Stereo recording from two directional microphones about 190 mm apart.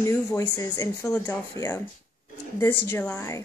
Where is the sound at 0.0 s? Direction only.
15° left (ahead or behind).